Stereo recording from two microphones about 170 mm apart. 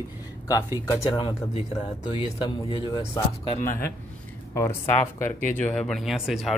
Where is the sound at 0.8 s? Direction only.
25° left (ahead or behind).